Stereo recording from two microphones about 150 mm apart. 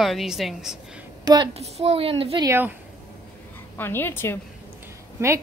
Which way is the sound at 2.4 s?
15° right (ahead or behind).